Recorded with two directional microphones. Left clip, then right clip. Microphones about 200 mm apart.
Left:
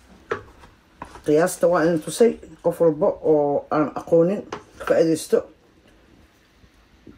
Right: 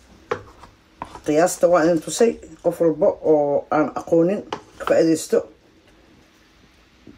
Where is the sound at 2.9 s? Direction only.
15° left (ahead or behind).